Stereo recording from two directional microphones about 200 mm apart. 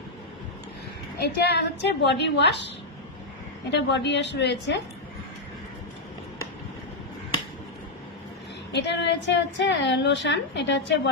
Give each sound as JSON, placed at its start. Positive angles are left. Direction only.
{"t": 1.2, "sound": "a woman's voice", "side_deg": 55}
{"t": 3.7, "sound": "a woman's voice", "side_deg": 60}
{"t": 8.7, "sound": "a woman's voice", "side_deg": 60}